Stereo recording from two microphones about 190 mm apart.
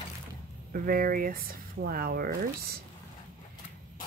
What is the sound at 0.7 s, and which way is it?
Speech, 50° right (ahead or behind).